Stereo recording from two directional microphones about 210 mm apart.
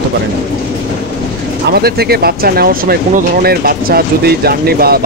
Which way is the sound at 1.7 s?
50° right (ahead or behind).